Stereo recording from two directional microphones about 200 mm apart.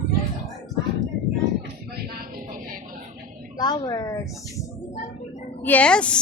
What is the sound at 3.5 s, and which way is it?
A woman's voice, 20° left (ahead or behind).